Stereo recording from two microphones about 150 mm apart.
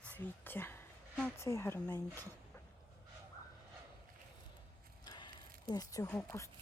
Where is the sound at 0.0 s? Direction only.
10° left (ahead or behind).